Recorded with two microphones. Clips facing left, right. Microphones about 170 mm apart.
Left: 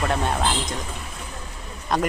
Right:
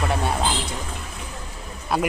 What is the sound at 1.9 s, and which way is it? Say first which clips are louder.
Speech: even; 5° right (ahead or behind).